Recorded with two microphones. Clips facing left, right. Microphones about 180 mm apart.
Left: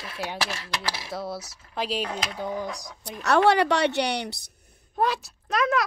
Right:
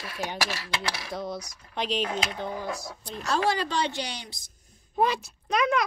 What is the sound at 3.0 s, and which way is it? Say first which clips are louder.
A woman's voice: left 6 dB; 65° left (ahead or behind).